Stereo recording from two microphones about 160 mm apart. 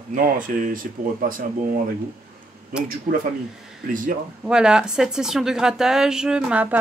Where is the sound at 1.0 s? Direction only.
60° right (ahead or behind).